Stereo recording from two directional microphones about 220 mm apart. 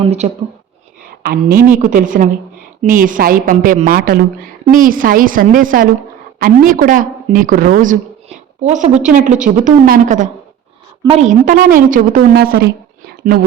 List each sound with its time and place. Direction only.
0.2 s a woman's voice: 35° right (ahead or behind)